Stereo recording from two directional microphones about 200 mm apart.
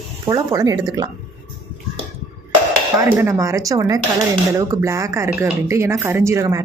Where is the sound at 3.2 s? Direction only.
15° right (ahead or behind).